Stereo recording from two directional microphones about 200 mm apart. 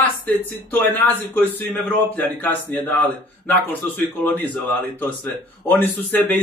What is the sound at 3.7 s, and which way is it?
A man's voice, 10° left (ahead or behind).